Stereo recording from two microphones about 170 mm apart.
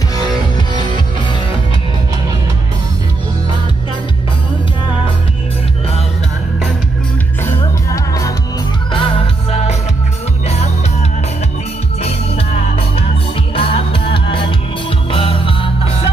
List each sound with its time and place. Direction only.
7.9 s music: 20° left (ahead or behind)
8.9 s music: 30° left (ahead or behind)
13.6 s music: 30° left (ahead or behind)